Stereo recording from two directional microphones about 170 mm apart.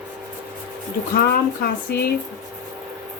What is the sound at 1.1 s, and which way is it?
Speech, 65° left (ahead or behind).